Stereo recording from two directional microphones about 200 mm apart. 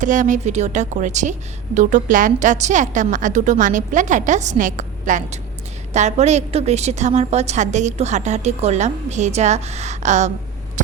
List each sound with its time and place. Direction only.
0.0 s a woman's voice: 40° right (ahead or behind)